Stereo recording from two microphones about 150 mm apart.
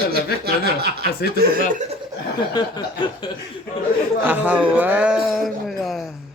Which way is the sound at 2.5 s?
30° left (ahead or behind).